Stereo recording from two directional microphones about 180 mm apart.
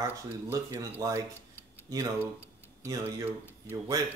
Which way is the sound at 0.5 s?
15° right (ahead or behind).